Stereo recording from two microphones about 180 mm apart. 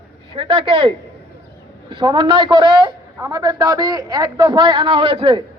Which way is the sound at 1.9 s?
25° right (ahead or behind).